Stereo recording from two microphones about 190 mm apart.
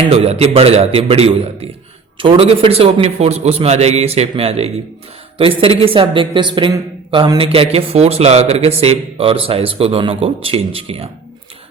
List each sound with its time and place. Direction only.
0.0 s speech: 30° right (ahead or behind)